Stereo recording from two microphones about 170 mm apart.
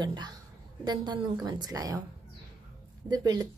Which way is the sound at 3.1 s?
25° right (ahead or behind).